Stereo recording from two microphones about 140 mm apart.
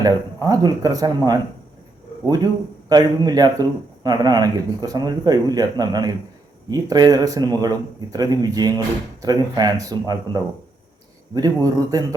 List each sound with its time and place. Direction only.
0.0 s a man's voice: 25° right (ahead or behind)
11.3 s a man's voice: 25° right (ahead or behind)